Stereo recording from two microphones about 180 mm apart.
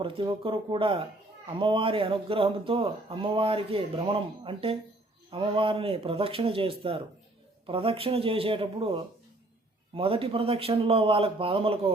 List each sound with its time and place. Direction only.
0.0 s speech: 30° right (ahead or behind)